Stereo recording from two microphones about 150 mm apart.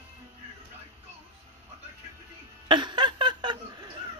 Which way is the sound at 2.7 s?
30° right (ahead or behind).